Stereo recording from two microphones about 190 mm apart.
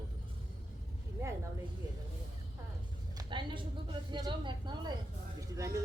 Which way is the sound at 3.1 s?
25° right (ahead or behind).